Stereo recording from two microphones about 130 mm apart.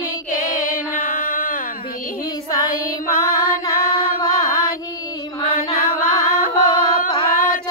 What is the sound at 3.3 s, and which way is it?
Music, 30° left (ahead or behind).